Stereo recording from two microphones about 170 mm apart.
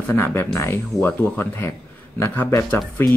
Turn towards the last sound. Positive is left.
turn(degrees=10)  # may be behind; listen again after turning